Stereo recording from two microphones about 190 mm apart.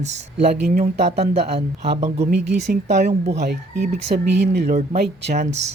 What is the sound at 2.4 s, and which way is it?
Speech, 65° right (ahead or behind).